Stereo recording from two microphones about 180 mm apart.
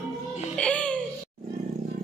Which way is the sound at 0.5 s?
5° left (ahead or behind).